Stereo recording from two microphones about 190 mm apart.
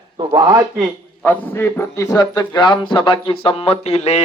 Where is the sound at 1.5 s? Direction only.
15° left (ahead or behind).